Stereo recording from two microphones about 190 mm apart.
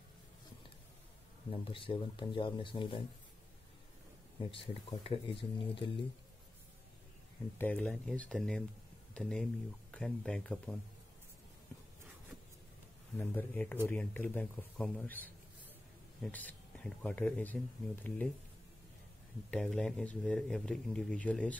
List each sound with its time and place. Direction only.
1.5 s speech: 30° left (ahead or behind)
4.4 s speech: 30° left (ahead or behind)
7.5 s speech: 10° left (ahead or behind)
13.2 s speech: 10° left (ahead or behind)
19.5 s speech: 5° left (ahead or behind)